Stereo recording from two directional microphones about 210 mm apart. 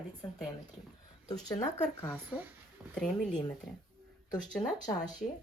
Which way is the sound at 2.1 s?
5° right (ahead or behind).